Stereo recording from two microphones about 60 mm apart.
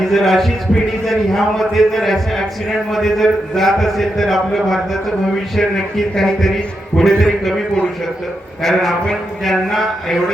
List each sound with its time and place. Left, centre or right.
0.0 s a man's voice: centre
8.6 s a man's voice: centre